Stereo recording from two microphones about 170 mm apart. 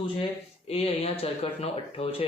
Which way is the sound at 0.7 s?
35° left (ahead or behind).